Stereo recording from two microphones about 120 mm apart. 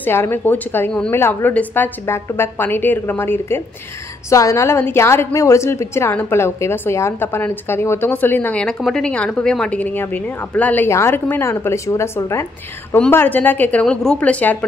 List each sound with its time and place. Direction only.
0.0 s a woman's voice: 20° left (ahead or behind)